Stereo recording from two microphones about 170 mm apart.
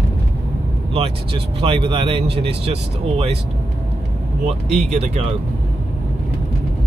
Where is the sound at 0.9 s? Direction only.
35° right (ahead or behind).